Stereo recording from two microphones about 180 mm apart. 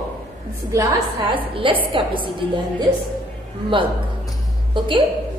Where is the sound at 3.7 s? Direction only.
30° right (ahead or behind).